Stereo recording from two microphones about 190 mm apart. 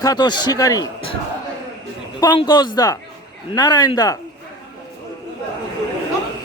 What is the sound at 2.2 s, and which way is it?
Speech, 25° left (ahead or behind).